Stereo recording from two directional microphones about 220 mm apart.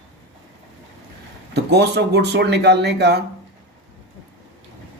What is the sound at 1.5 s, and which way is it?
Speech, 50° right (ahead or behind).